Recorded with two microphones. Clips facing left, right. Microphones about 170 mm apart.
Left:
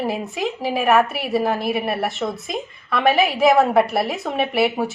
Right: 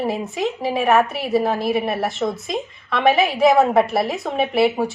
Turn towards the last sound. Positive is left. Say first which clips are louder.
# right 2 dB
turn(degrees=0)  # may be behind; listen again after turning